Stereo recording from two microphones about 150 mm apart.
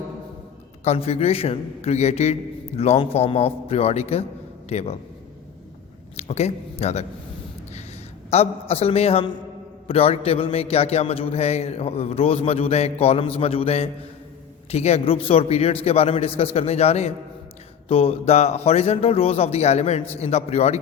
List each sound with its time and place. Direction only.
0.9 s speech: 45° left (ahead or behind)
6.1 s speech: 45° left (ahead or behind)
8.3 s speech: 40° left (ahead or behind)